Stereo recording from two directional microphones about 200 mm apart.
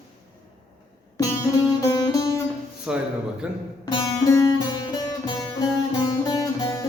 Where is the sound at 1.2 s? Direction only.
15° left (ahead or behind).